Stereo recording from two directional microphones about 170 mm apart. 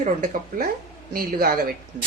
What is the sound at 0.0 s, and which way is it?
Speech, 50° right (ahead or behind).